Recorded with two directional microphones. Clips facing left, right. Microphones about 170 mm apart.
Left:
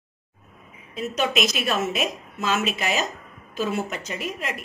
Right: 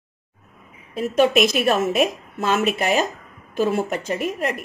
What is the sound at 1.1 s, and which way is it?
A woman's voice, 50° right (ahead or behind).